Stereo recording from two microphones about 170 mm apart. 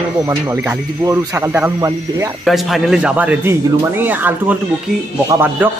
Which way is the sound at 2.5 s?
Centre (ahead or behind).